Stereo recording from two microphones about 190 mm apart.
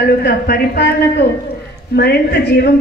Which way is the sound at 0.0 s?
55° left (ahead or behind).